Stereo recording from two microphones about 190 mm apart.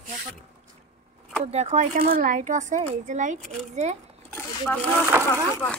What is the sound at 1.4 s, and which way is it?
Speech, 35° right (ahead or behind).